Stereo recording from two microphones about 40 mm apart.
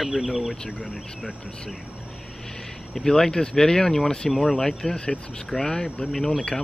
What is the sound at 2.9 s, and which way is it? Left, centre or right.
Speech, centre.